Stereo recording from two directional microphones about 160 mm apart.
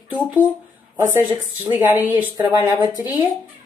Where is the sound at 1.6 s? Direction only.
15° right (ahead or behind).